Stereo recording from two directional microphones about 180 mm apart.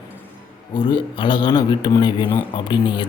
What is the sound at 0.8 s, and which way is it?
Speech, 25° left (ahead or behind).